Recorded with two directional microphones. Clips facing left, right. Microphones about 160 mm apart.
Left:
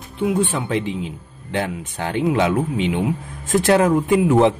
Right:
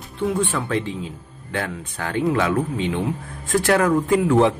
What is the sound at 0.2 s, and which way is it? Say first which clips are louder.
Speech: left 2 dB; 15° left (ahead or behind).